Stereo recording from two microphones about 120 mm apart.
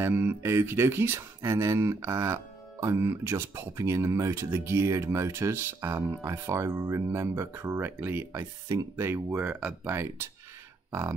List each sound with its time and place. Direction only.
0.0 s speech: 20° right (ahead or behind)
9.8 s speech: 20° right (ahead or behind)